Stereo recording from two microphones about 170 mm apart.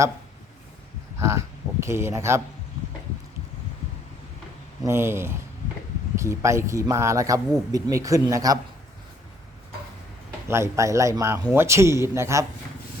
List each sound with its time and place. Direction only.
1.2 s speech: 15° right (ahead or behind)
4.9 s a man's voice: 15° right (ahead or behind)
10.5 s a man's voice: 15° right (ahead or behind)